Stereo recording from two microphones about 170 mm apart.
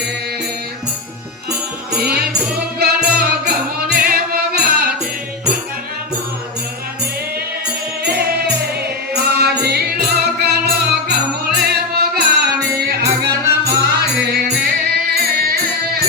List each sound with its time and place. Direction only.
2.0 s music: 60° right (ahead or behind)
8.0 s music: 70° right (ahead or behind)